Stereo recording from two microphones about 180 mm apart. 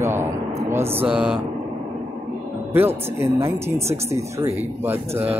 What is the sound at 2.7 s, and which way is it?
Speech, 15° right (ahead or behind).